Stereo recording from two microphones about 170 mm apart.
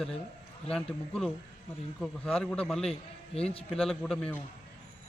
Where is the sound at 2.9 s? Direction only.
35° left (ahead or behind).